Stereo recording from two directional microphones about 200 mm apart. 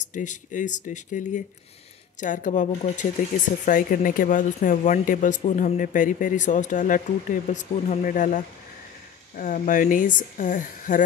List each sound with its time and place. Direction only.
0.0 s speech: 40° left (ahead or behind)